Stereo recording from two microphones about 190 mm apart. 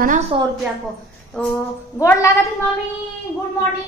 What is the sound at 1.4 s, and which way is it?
Speech, 5° left (ahead or behind).